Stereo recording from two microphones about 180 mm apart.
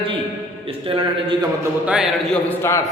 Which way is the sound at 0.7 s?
30° right (ahead or behind).